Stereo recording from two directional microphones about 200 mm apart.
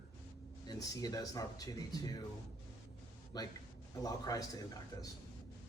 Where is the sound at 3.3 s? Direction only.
20° left (ahead or behind).